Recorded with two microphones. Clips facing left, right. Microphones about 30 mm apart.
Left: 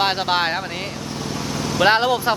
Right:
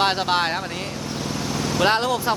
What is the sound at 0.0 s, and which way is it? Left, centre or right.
Speech, centre.